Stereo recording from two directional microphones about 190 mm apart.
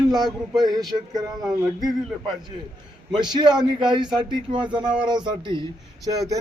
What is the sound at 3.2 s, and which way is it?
A man's voice, 20° right (ahead or behind).